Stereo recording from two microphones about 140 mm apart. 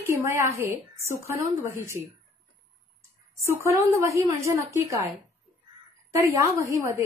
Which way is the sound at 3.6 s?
20° right (ahead or behind).